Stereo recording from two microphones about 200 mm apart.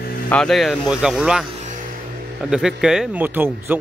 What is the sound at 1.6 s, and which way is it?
Music, 40° right (ahead or behind).